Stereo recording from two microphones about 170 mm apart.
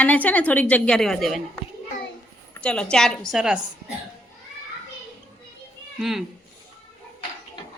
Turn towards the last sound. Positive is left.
turn(degrees=0)  # may be behind; listen again after turning